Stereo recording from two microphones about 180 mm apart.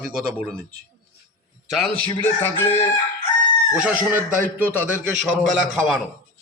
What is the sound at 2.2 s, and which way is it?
Crowing, 15° left (ahead or behind).